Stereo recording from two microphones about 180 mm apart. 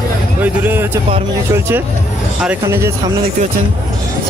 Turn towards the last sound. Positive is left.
turn(degrees=-15)  # may be behind; listen again after turning